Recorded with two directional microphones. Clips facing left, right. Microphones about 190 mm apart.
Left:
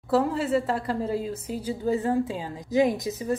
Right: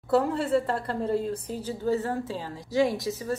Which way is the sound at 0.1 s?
Centre (ahead or behind).